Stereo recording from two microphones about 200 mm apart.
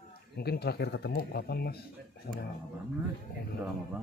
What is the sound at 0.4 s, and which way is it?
Speech, 55° left (ahead or behind).